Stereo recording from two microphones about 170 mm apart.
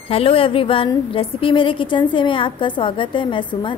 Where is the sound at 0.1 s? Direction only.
35° left (ahead or behind).